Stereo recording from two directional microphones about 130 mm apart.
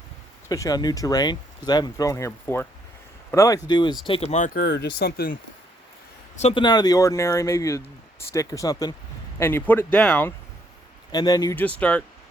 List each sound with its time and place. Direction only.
0.4 s speech: 25° left (ahead or behind); by 4.3 s 45° left (ahead or behind)
4.3 s speech: 80° left
6.5 s speech: 35° left (ahead or behind)
9.4 s speech: 15° left (ahead or behind)
11.1 s speech: 30° left (ahead or behind)
11.5 s speech: 10° left (ahead or behind)